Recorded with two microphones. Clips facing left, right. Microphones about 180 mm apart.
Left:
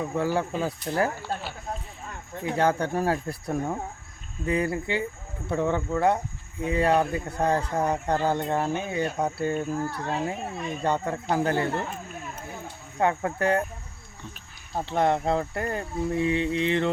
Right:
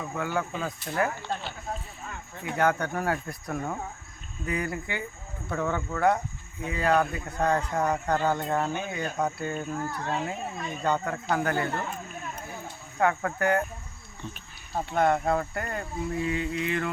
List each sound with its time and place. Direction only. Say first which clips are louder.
0.0 s speech: left 4 dB; 30° left (ahead or behind)
1.2 s speech: left 1 dB; 10° left (ahead or behind)
2.4 s speech: left 2 dB; 30° left (ahead or behind)
9.6 s speech: left 3 dB; 5° left (ahead or behind)
10.8 s speech: left 1 dB; 25° left (ahead or behind)
13.0 s speech: left 1 dB; 25° left (ahead or behind)
14.8 s speech: left 1 dB; 25° left (ahead or behind)